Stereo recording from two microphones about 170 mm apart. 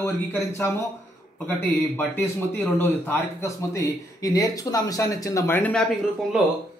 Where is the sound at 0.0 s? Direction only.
15° left (ahead or behind).